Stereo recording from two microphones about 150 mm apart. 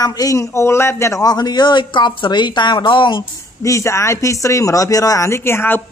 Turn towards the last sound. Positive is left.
turn(degrees=15)  # may be behind; listen again after turning